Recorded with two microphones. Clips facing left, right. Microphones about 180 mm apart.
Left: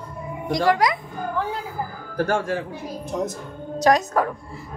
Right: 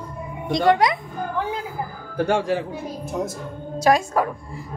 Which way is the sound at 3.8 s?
10° right (ahead or behind).